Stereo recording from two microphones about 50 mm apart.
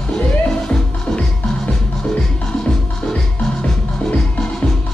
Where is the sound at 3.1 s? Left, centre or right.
Centre.